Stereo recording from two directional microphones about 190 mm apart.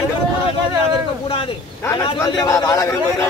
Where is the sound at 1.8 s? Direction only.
15° left (ahead or behind).